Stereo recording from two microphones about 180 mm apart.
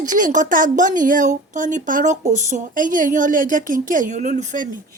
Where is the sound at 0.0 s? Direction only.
45° right (ahead or behind).